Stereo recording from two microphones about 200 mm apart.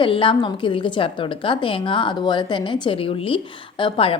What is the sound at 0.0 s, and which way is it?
A woman's voice, 25° left (ahead or behind).